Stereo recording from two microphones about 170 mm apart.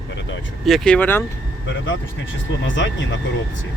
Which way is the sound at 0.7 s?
5° left (ahead or behind).